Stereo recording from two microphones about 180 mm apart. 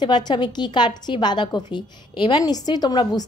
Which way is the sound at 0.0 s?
25° left (ahead or behind).